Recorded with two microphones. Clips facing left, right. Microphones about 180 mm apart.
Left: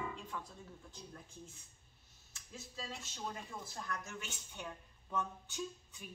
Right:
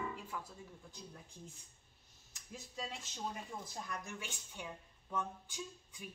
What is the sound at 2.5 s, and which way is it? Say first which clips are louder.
A woman's voice: right 1 dB; 15° right (ahead or behind).